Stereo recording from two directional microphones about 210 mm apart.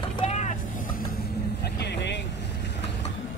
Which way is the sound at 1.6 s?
50° left (ahead or behind).